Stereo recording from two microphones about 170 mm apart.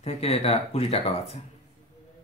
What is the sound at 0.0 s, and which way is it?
Speech, 35° left (ahead or behind).